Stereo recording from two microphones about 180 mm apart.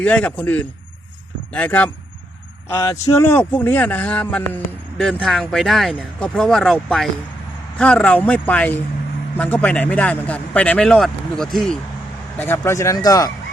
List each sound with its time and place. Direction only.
0.0 s speech: 5° left (ahead or behind)
12.4 s speech: 15° left (ahead or behind)